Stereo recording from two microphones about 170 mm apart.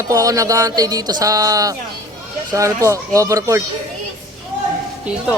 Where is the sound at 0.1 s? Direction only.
20° right (ahead or behind).